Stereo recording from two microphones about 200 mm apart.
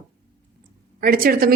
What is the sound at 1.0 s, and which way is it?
Speech, 45° right (ahead or behind).